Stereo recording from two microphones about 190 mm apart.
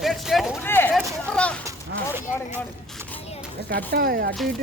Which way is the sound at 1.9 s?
60° right (ahead or behind).